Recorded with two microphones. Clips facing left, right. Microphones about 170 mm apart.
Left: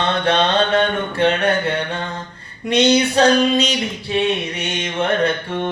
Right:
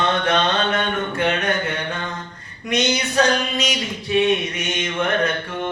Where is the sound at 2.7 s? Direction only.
30° left (ahead or behind).